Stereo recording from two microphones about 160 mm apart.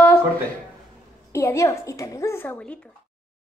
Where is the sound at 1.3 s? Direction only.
20° left (ahead or behind).